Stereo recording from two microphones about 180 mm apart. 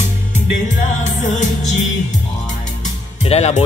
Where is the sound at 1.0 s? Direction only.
40° left (ahead or behind).